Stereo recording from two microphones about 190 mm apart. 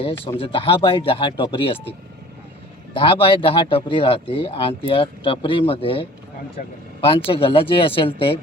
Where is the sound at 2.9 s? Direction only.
25° left (ahead or behind).